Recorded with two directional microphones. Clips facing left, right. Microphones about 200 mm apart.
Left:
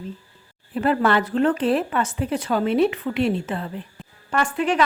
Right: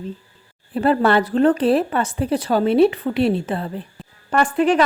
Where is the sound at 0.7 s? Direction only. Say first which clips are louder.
Right 3 dB; 35° right (ahead or behind).